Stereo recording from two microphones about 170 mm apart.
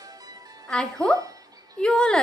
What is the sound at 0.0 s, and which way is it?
Music, 20° right (ahead or behind).